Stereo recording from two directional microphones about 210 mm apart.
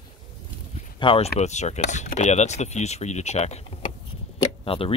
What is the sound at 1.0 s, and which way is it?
Speech, 25° left (ahead or behind).